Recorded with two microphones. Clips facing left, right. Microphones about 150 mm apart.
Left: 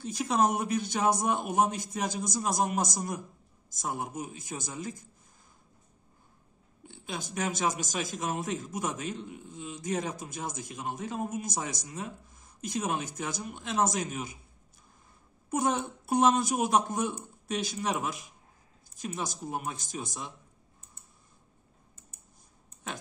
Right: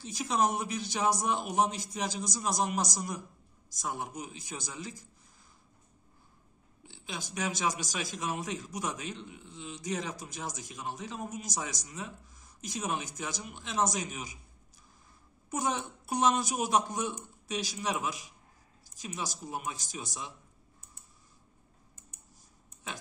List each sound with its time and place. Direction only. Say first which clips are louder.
0.0 s a man's voice: left 3 dB; 55° left (ahead or behind)
6.8 s a man's voice: left 3 dB; 50° left (ahead or behind)
15.5 s a man's voice: left 4 dB; 55° left (ahead or behind)